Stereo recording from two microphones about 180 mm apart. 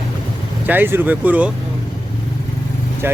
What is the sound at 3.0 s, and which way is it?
Speech, 10° right (ahead or behind).